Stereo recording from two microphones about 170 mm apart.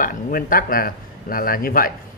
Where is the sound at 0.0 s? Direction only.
55° left (ahead or behind).